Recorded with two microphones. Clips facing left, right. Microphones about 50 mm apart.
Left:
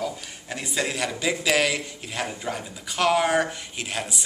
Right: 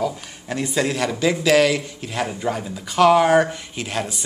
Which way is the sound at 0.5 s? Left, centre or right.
Centre.